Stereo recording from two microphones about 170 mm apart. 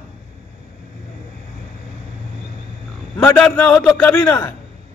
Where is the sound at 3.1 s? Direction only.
5° left (ahead or behind).